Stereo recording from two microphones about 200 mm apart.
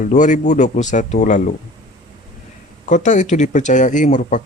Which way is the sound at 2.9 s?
40° left (ahead or behind).